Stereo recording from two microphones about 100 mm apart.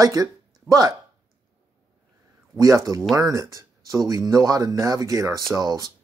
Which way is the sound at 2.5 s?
35° right (ahead or behind).